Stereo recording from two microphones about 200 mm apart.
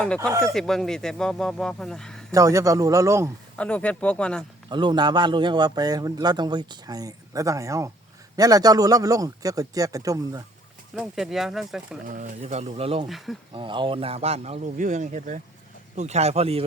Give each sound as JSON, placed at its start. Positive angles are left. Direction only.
{"t": 0.2, "sound": "a man's voice", "side_deg": -15}
{"t": 0.4, "sound": "speech", "side_deg": 0}
{"t": 2.3, "sound": "a man's voice", "side_deg": -15}
{"t": 3.6, "sound": "speech", "side_deg": 5}
{"t": 4.7, "sound": "a man's voice", "side_deg": -20}
{"t": 10.9, "sound": "speech", "side_deg": 0}
{"t": 12.0, "sound": "a man's voice", "side_deg": -40}
{"t": 13.1, "sound": "speech", "side_deg": 0}
{"t": 13.5, "sound": "a man's voice", "side_deg": -25}